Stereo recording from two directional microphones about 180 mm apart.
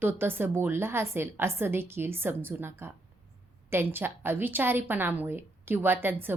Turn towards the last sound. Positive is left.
turn(degrees=-10)  # may be behind; listen again after turning